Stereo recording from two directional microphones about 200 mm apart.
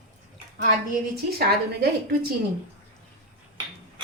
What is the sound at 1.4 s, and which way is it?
Speech, 50° right (ahead or behind).